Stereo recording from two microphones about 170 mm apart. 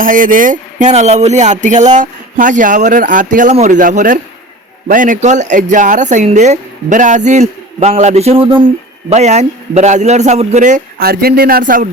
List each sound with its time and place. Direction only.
0.0 s speech: 50° right (ahead or behind)